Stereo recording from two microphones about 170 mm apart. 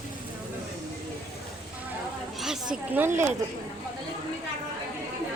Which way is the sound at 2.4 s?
5° right (ahead or behind).